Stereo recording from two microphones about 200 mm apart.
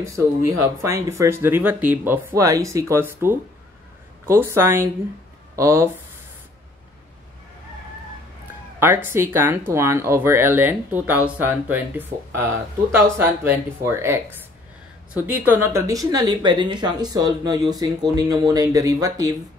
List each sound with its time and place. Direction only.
0.0 s speech: 15° right (ahead or behind)
8.7 s speech: 10° right (ahead or behind)